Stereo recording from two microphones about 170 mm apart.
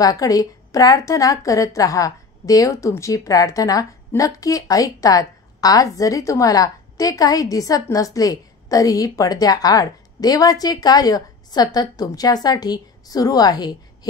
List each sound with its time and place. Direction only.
0.0 s a woman's voice: 20° left (ahead or behind)